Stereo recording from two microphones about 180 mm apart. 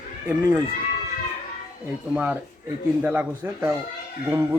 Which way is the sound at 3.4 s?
15° right (ahead or behind).